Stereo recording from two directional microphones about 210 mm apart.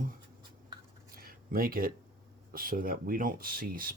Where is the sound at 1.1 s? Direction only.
45° right (ahead or behind).